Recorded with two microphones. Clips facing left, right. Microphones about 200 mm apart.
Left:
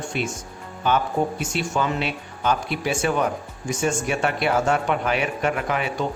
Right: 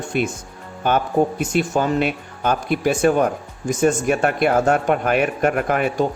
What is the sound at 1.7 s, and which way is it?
Speech, 40° right (ahead or behind).